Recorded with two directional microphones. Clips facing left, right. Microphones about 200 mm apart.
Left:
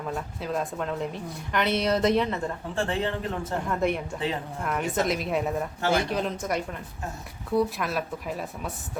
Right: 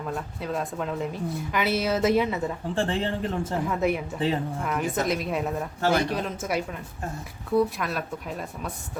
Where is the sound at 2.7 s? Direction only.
30° right (ahead or behind).